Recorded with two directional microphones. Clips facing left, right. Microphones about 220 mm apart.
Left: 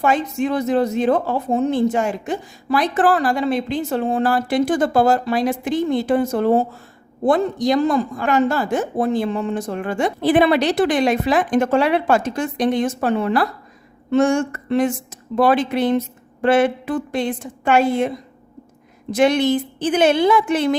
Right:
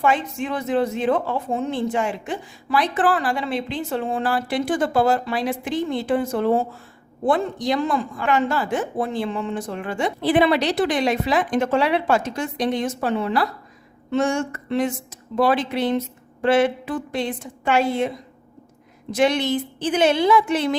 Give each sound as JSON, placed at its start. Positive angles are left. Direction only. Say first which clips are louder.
{"t": 0.0, "sound": "speech", "louder": "left 3 dB", "side_deg": 40}
{"t": 19.1, "sound": "speech", "louder": "left 4 dB", "side_deg": 50}